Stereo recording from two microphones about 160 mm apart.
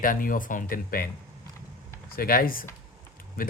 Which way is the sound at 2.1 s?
65° left (ahead or behind).